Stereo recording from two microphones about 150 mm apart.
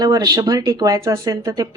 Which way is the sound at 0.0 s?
25° right (ahead or behind).